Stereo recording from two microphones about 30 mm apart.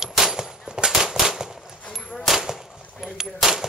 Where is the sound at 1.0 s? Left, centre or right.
Centre.